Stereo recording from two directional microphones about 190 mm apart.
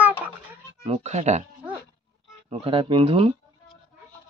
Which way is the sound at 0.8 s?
35° right (ahead or behind).